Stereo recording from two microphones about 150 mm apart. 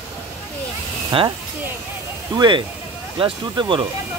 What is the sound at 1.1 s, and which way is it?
Speech, 35° right (ahead or behind).